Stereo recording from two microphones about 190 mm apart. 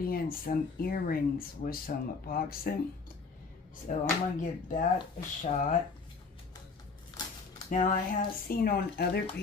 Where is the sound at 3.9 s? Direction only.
40° left (ahead or behind).